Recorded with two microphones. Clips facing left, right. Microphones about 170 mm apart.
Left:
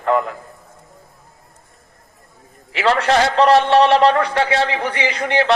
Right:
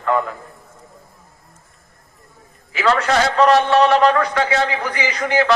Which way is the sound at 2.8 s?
30° left (ahead or behind).